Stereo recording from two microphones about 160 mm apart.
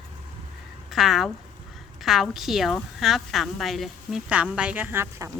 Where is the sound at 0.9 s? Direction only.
Centre (ahead or behind).